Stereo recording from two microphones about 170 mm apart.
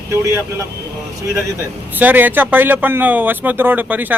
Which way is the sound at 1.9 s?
10° right (ahead or behind).